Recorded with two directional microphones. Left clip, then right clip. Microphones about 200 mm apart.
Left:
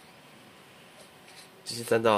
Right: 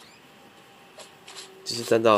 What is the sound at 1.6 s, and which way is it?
Speech, 15° right (ahead or behind).